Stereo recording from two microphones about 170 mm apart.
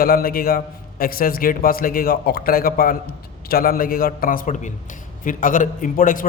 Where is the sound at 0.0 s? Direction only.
60° left (ahead or behind).